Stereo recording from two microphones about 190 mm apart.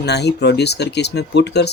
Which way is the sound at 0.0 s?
60° left (ahead or behind).